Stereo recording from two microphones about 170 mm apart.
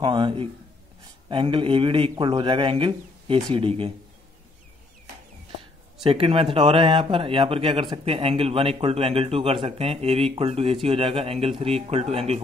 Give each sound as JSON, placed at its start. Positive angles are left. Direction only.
{"t": 0.0, "sound": "a man's voice", "side_deg": -30}
{"t": 6.0, "sound": "speech", "side_deg": -35}